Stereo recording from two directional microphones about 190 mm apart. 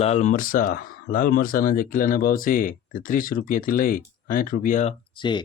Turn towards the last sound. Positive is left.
turn(degrees=25)  # may be behind; listen again after turning